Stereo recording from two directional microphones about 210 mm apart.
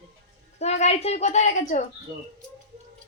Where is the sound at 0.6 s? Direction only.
30° left (ahead or behind).